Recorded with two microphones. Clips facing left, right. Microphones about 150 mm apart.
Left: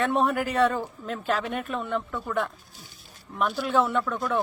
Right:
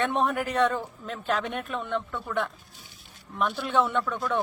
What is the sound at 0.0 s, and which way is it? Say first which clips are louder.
Speech: left 2 dB; centre (ahead or behind).